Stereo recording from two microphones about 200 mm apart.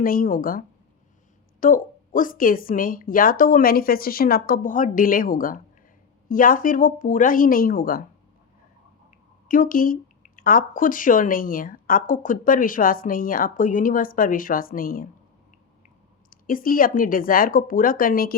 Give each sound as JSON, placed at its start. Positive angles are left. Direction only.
{"t": 0.0, "sound": "speech", "side_deg": 45}
{"t": 1.6, "sound": "speech", "side_deg": 40}
{"t": 9.5, "sound": "speech", "side_deg": 45}
{"t": 16.3, "sound": "speech", "side_deg": 45}